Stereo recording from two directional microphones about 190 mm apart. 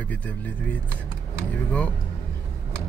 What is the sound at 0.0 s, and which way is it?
Speech, 5° left (ahead or behind).